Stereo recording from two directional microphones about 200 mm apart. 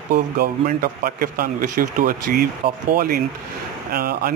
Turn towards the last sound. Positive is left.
turn(degrees=-50)  # may be behind; listen again after turning